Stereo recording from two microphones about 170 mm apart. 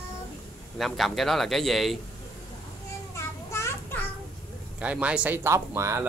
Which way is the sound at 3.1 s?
15° left (ahead or behind).